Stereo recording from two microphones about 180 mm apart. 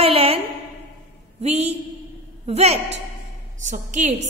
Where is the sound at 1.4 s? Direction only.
35° right (ahead or behind).